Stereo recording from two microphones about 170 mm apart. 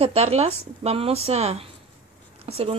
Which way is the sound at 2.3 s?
35° right (ahead or behind).